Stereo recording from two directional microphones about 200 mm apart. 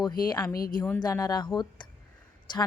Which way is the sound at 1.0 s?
20° left (ahead or behind).